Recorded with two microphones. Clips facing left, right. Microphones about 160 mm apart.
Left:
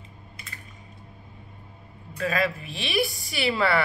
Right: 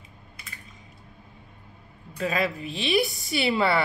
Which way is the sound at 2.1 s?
20° right (ahead or behind).